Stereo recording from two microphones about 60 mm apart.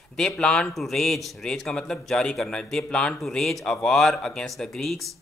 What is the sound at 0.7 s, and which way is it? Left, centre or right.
A man's voice, centre.